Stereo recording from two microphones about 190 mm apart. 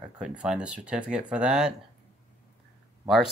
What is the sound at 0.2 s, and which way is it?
Speech, 5° right (ahead or behind).